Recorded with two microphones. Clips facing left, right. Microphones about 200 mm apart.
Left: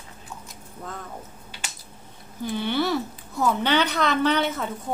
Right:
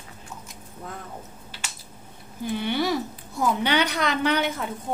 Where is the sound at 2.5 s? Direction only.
15° right (ahead or behind).